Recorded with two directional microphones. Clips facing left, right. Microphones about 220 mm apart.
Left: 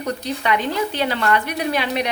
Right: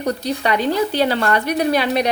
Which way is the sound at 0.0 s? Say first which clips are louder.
Right 3 dB; 35° right (ahead or behind).